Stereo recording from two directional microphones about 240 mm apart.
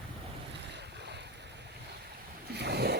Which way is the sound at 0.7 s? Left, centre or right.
Right.